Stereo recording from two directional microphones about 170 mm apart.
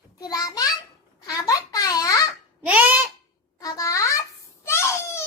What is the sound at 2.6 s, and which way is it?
Babbling, 10° right (ahead or behind).